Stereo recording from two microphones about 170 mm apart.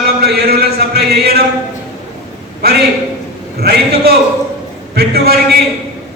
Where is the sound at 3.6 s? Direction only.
70° right (ahead or behind).